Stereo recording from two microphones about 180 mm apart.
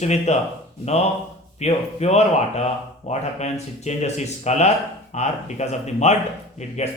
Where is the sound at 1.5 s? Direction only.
35° left (ahead or behind).